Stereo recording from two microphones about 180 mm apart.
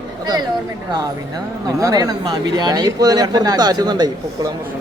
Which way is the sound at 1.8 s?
20° right (ahead or behind).